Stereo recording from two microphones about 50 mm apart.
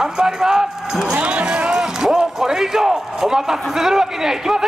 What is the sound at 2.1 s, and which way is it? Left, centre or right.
A man's voice, centre.